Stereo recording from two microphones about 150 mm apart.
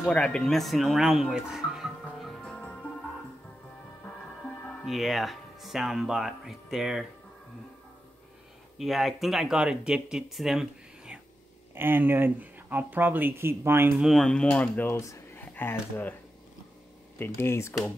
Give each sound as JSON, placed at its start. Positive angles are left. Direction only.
{"t": 0.0, "sound": "speech", "side_deg": 5}
{"t": 4.8, "sound": "speech", "side_deg": 0}
{"t": 8.7, "sound": "speech", "side_deg": 0}
{"t": 11.7, "sound": "speech", "side_deg": -15}
{"t": 14.0, "sound": "speech", "side_deg": 0}
{"t": 17.2, "sound": "speech", "side_deg": 15}